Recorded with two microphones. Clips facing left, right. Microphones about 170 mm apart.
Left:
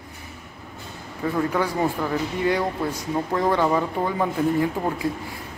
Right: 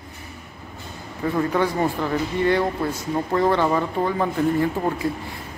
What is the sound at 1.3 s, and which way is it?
Speech, centre (ahead or behind).